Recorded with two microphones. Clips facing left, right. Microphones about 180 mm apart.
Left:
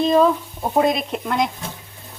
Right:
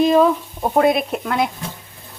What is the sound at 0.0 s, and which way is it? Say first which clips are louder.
Speech: right 2 dB; 10° right (ahead or behind).